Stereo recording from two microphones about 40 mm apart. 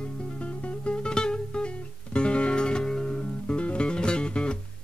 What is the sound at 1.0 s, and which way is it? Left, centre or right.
Music, left.